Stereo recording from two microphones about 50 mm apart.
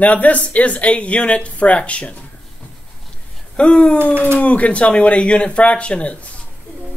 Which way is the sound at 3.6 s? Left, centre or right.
Left.